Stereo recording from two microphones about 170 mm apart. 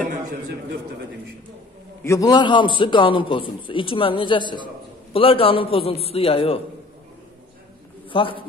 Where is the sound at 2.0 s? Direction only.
15° left (ahead or behind); by 6.6 s 35° left (ahead or behind).